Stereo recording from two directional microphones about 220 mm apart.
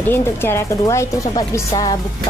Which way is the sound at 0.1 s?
10° left (ahead or behind).